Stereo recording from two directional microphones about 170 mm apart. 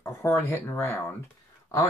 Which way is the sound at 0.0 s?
15° left (ahead or behind).